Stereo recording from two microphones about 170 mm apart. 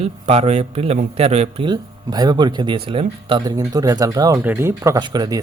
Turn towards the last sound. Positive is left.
turn(degrees=-25)  # may be behind; listen again after turning